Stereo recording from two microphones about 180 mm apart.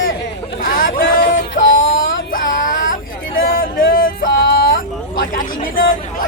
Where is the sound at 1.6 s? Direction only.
45° left (ahead or behind).